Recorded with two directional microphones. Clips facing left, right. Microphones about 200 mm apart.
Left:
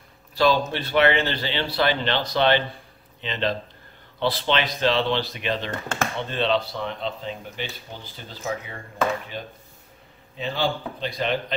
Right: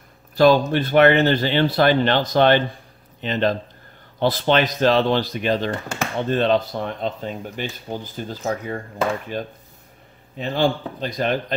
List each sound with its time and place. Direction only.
0.4 s speech: 50° right (ahead or behind)